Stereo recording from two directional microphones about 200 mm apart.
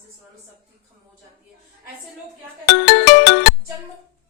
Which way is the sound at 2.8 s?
55° left (ahead or behind).